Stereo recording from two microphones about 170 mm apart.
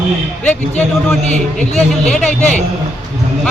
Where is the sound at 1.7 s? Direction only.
5° left (ahead or behind).